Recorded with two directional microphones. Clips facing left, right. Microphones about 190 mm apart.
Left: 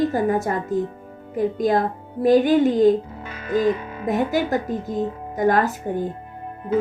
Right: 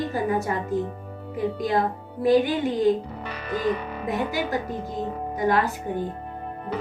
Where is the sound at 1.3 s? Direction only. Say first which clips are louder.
Left 4 dB; 45° left (ahead or behind).